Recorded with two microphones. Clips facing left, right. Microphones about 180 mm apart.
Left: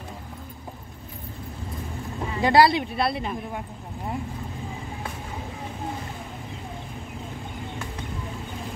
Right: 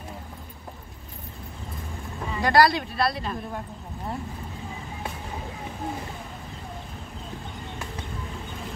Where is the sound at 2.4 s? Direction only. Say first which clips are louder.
Left 2 dB; 20° left (ahead or behind).